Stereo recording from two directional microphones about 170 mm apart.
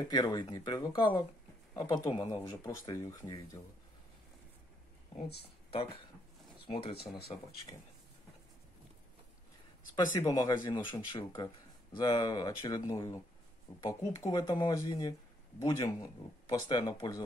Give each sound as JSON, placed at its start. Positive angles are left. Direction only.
{"t": 0.1, "sound": "speech", "side_deg": 25}
{"t": 6.7, "sound": "speech", "side_deg": 30}
{"t": 9.9, "sound": "speech", "side_deg": 20}